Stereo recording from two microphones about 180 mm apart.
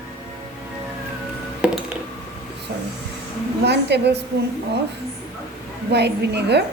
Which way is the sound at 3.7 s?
70° right (ahead or behind).